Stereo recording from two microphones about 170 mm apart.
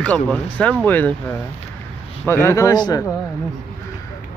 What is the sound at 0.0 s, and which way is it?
Speech, 10° left (ahead or behind).